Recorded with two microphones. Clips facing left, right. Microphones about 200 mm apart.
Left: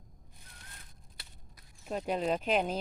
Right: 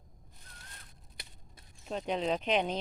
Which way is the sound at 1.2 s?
15° right (ahead or behind).